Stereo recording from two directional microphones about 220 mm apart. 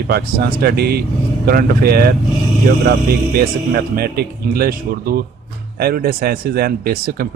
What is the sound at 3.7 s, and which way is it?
Speech, 45° right (ahead or behind).